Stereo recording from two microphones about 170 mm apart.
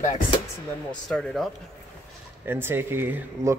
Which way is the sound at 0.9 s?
5° left (ahead or behind).